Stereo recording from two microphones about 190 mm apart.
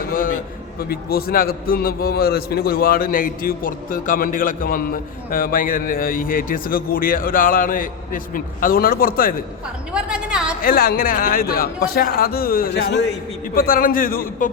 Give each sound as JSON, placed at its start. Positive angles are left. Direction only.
{"t": 0.1, "sound": "a sound", "side_deg": 45}
{"t": 0.9, "sound": "a man's voice", "side_deg": 50}
{"t": 9.9, "sound": "a woman's voice", "side_deg": -5}
{"t": 10.6, "sound": "a man's voice", "side_deg": 50}